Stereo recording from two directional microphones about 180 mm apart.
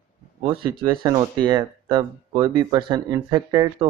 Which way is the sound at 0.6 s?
25° right (ahead or behind).